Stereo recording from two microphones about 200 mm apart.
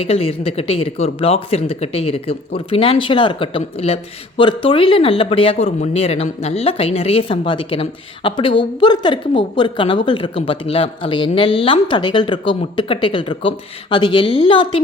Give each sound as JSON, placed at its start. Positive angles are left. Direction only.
{"t": 0.0, "sound": "a woman's voice", "side_deg": 30}